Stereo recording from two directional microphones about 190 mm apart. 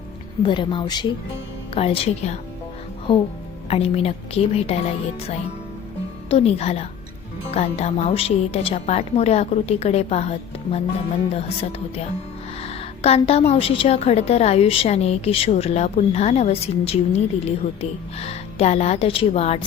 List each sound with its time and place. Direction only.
0.4 s a woman's voice: 25° left (ahead or behind)
3.7 s a woman's voice: 30° left (ahead or behind)
12.6 s a woman's voice: 30° left (ahead or behind)